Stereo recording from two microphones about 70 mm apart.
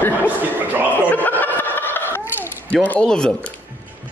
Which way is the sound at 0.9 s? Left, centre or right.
Left.